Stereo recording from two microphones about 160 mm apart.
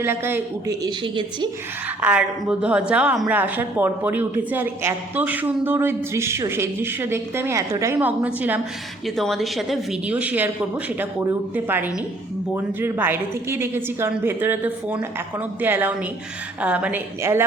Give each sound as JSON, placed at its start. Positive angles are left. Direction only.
{"t": 0.0, "sound": "a woman's voice", "side_deg": -15}
{"t": 0.9, "sound": "a woman's voice", "side_deg": -30}
{"t": 2.0, "sound": "a woman's voice", "side_deg": -10}
{"t": 9.0, "sound": "a woman's voice", "side_deg": 0}